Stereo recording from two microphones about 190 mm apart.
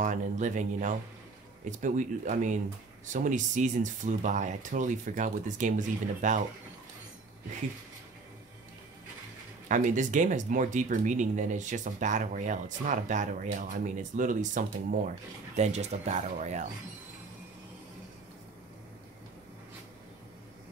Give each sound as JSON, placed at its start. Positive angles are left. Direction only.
{"t": 0.0, "sound": "speech", "side_deg": -40}
{"t": 9.7, "sound": "speech", "side_deg": -40}